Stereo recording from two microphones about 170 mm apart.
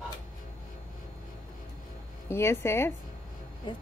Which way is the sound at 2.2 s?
15° left (ahead or behind).